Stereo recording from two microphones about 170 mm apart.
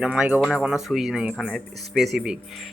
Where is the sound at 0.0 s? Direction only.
5° right (ahead or behind).